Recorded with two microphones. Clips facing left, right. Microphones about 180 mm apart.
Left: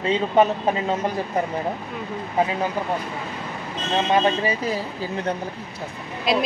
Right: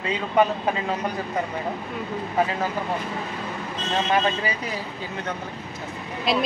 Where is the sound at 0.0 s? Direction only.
25° left (ahead or behind).